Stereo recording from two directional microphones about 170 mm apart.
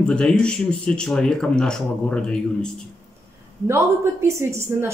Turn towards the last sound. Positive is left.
turn(degrees=-15)  # may be behind; listen again after turning